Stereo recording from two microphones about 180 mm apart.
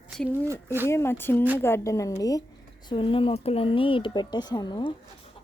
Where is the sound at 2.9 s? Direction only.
30° left (ahead or behind).